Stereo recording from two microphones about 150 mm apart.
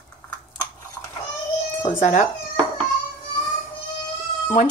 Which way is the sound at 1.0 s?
15° left (ahead or behind).